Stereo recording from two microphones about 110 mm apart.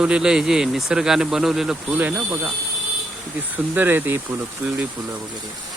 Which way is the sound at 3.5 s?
15° right (ahead or behind).